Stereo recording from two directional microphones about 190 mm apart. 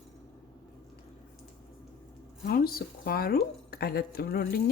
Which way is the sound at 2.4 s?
50° left (ahead or behind).